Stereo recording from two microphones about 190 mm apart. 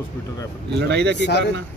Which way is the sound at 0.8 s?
60° right (ahead or behind).